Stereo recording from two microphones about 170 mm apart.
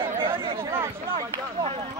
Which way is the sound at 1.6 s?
35° right (ahead or behind).